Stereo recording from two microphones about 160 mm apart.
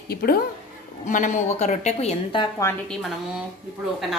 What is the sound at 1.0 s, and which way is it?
A woman's voice, 50° left (ahead or behind).